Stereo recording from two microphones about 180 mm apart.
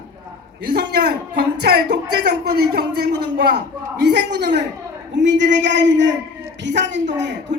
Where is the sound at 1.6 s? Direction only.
70° right (ahead or behind).